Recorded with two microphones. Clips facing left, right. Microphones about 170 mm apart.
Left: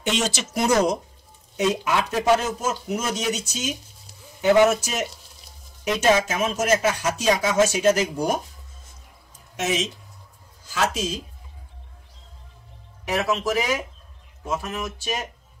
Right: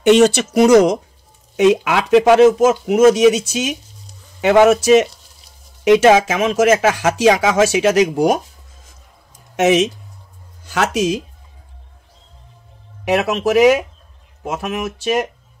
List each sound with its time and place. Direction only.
0.0 s speech: 65° right (ahead or behind); by 8.4 s 90° right
9.6 s speech: 70° right (ahead or behind)
13.0 s speech: 75° right (ahead or behind)